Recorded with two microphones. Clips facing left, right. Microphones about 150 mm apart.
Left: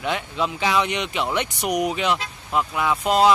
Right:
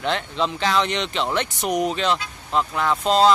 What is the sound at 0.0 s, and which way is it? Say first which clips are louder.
Speech: right 1 dB; 10° left (ahead or behind).